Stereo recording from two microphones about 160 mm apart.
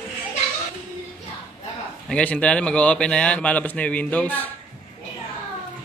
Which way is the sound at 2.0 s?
10° left (ahead or behind).